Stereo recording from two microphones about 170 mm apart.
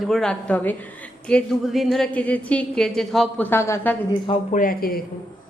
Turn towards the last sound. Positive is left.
turn(degrees=60)  # may be behind; listen again after turning